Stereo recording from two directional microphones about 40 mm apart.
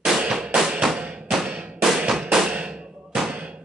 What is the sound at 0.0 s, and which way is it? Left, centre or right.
Drum, centre.